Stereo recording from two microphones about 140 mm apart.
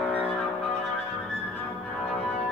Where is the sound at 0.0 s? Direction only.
10° left (ahead or behind).